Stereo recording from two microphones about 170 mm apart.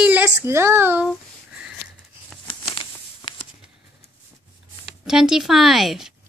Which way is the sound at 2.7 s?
30° left (ahead or behind).